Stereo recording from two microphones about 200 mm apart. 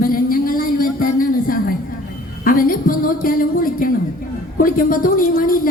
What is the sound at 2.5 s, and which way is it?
A woman's voice, 45° left (ahead or behind).